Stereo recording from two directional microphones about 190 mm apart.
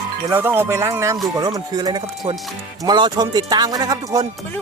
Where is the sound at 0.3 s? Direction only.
10° right (ahead or behind).